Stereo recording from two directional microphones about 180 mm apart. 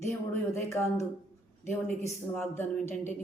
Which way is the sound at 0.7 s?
15° left (ahead or behind).